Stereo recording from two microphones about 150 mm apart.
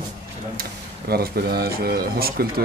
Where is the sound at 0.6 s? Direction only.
90° right.